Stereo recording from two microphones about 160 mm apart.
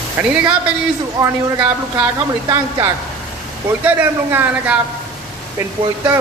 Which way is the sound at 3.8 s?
10° right (ahead or behind).